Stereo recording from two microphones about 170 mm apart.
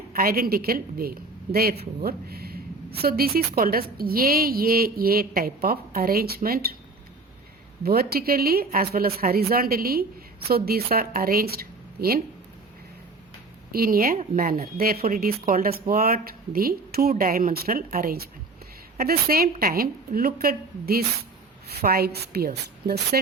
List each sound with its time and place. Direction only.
0.2 s a woman's voice: 60° right (ahead or behind)
7.9 s a woman's voice: 65° right (ahead or behind)
13.7 s a woman's voice: 60° right (ahead or behind)